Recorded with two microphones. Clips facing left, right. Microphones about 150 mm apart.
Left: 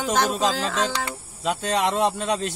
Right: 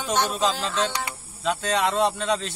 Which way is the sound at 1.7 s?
40° left (ahead or behind).